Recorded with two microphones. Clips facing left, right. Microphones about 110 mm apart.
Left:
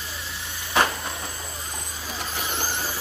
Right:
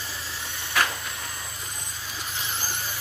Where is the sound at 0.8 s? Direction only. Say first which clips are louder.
Left 4 dB; 25° left (ahead or behind).